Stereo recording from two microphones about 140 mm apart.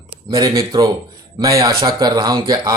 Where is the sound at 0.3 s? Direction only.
30° right (ahead or behind).